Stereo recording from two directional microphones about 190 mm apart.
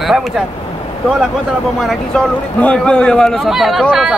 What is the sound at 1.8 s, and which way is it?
Speech, 5° left (ahead or behind).